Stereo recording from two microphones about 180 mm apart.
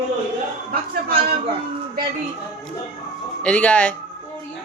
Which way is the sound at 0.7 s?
55° right (ahead or behind).